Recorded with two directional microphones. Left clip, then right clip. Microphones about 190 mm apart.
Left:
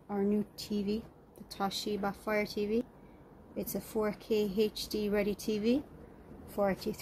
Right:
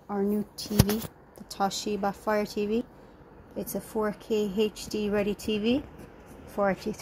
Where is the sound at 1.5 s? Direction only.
15° right (ahead or behind).